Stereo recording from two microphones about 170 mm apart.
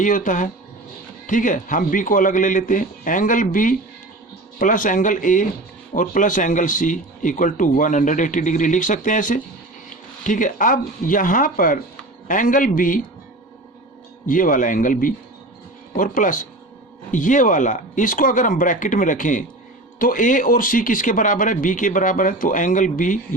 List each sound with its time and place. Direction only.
0.0 s speech: 50° left (ahead or behind)
14.3 s speech: 50° left (ahead or behind)